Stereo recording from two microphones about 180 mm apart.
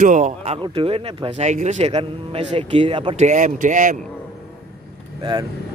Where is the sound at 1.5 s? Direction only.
40° right (ahead or behind).